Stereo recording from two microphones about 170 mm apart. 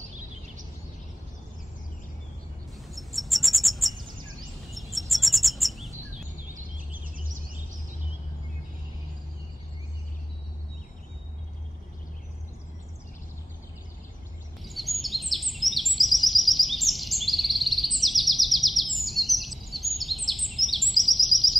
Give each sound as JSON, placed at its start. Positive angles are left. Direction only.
{"t": 2.9, "sound": "bird", "side_deg": 0}
{"t": 4.6, "sound": "chirp", "side_deg": 0}
{"t": 6.5, "sound": "a sound", "side_deg": -55}
{"t": 14.6, "sound": "bird vocalization", "side_deg": 0}